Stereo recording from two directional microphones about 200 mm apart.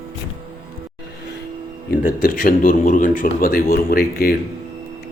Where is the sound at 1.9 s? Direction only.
45° left (ahead or behind).